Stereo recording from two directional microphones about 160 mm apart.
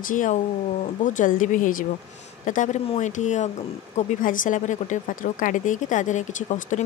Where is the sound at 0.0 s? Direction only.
55° left (ahead or behind).